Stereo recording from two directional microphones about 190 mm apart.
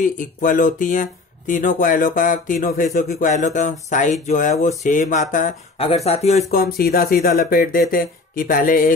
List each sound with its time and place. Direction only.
0.0 s speech: 45° left (ahead or behind)
5.8 s speech: 30° left (ahead or behind)
6.5 s speech: 55° left (ahead or behind)